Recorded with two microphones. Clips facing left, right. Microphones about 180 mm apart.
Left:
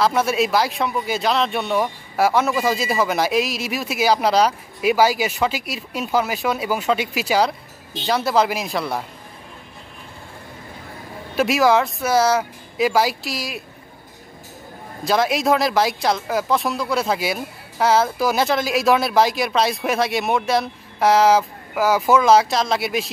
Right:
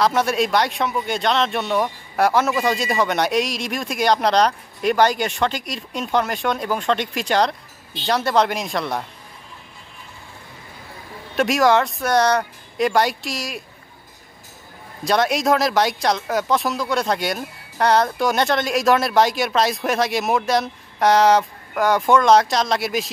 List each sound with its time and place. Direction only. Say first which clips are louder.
0.0 s speech: even; centre (ahead or behind)
11.3 s speech: even; centre (ahead or behind)
15.0 s speech: even; centre (ahead or behind)